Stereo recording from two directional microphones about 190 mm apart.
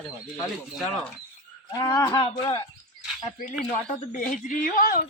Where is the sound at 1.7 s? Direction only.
20° left (ahead or behind).